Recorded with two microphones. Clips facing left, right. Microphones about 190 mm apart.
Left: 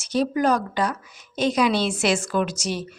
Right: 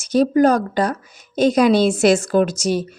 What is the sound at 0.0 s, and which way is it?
A woman's voice, 45° right (ahead or behind).